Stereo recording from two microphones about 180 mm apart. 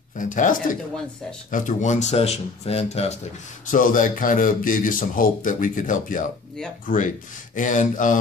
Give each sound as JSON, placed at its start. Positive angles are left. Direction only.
{"t": 0.2, "sound": "speech", "side_deg": 45}
{"t": 3.6, "sound": "speech", "side_deg": 50}